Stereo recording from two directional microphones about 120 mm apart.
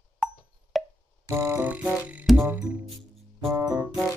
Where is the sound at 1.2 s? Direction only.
25° right (ahead or behind).